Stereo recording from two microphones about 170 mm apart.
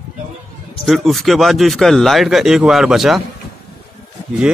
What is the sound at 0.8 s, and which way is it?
Speech, centre (ahead or behind).